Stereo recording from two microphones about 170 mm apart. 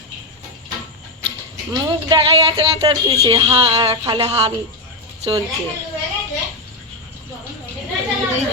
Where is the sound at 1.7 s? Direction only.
30° right (ahead or behind).